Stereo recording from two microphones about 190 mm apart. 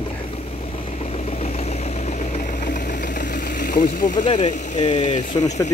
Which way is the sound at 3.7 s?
45° left (ahead or behind).